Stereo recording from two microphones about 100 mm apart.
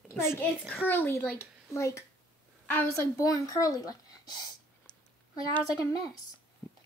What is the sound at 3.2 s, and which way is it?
Speech, 35° left (ahead or behind).